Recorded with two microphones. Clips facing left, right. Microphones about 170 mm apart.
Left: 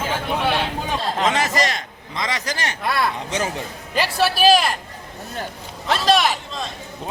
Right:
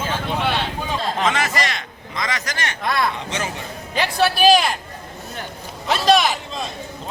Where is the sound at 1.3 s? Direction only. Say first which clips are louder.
Left 2 dB; 35° left (ahead or behind).